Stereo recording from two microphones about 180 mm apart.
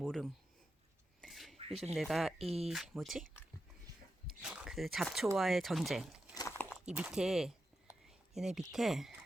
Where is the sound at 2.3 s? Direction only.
35° right (ahead or behind).